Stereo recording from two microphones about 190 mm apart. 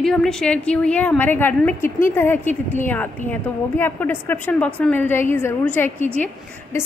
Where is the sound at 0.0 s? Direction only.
Centre (ahead or behind).